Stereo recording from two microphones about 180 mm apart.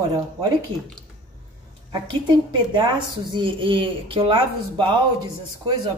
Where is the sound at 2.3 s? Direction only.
25° right (ahead or behind).